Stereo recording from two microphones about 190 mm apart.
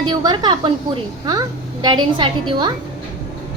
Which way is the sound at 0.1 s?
20° right (ahead or behind).